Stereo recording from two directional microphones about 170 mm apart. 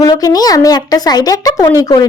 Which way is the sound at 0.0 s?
20° left (ahead or behind).